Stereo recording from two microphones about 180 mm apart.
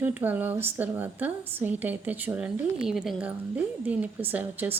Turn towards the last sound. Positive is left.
turn(degrees=-10)  # may be behind; listen again after turning